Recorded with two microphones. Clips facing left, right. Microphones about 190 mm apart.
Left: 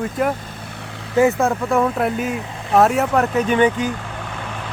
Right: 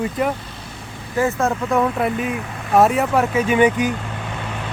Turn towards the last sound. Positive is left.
turn(degrees=-10)  # may be behind; listen again after turning